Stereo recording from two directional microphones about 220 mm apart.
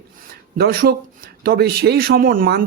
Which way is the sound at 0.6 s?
45° right (ahead or behind).